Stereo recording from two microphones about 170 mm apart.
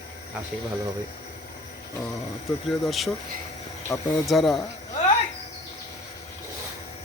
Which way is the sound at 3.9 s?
15° left (ahead or behind).